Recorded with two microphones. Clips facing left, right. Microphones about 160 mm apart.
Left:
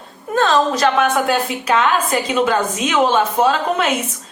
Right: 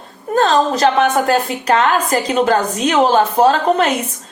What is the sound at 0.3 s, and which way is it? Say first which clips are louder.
A woman's voice: right 2 dB; 35° right (ahead or behind).